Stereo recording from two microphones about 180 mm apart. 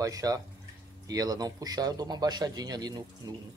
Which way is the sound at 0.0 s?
20° right (ahead or behind).